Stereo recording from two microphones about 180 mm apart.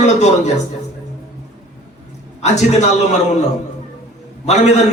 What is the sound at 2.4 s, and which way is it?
Speech, 40° left (ahead or behind).